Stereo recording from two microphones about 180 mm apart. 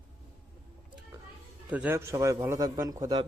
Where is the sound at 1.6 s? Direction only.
10° right (ahead or behind).